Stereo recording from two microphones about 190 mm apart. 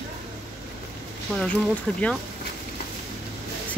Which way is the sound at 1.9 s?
5° left (ahead or behind).